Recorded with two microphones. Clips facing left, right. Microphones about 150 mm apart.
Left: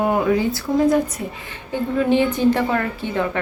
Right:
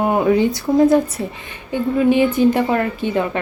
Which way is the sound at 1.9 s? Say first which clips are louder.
Right 3 dB; 10° right (ahead or behind).